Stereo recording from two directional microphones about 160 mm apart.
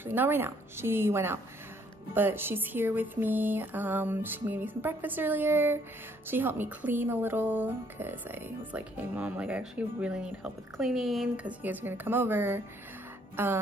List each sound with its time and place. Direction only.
0.0 s speech: 15° right (ahead or behind)